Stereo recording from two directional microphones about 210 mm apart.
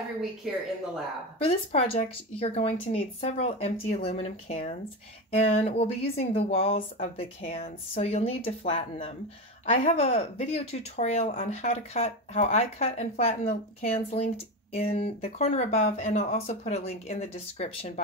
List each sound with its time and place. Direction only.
0.4 s speech: centre (ahead or behind)
1.4 s speech: 30° left (ahead or behind)